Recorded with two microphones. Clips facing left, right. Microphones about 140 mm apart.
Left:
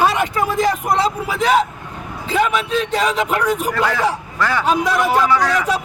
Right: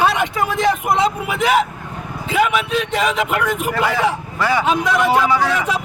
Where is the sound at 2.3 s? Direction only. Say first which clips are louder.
Even; 5° right (ahead or behind).